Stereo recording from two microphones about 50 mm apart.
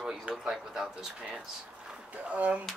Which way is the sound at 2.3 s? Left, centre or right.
Right.